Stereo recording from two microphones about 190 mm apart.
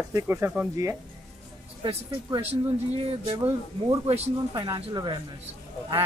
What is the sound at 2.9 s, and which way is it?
Speech, 30° right (ahead or behind).